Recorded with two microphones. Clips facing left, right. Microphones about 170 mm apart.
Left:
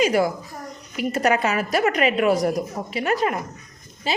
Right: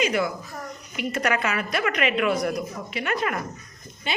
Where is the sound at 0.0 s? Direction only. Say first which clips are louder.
Left 5 dB; 40° left (ahead or behind).